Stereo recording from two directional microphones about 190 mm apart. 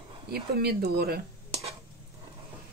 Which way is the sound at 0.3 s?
55° right (ahead or behind).